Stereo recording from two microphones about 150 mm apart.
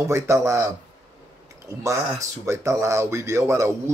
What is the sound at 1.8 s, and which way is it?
Speech, 20° right (ahead or behind).